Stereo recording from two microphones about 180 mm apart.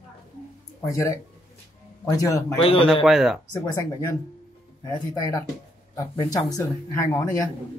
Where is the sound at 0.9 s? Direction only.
20° left (ahead or behind).